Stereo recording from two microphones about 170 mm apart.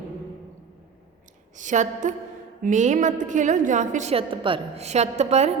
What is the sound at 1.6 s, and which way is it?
A woman's voice, 45° right (ahead or behind).